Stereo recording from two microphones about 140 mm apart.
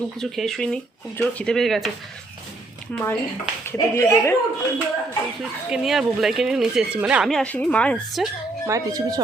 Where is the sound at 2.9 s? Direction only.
10° left (ahead or behind).